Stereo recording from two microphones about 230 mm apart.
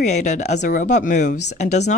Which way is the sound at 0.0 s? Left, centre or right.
Left.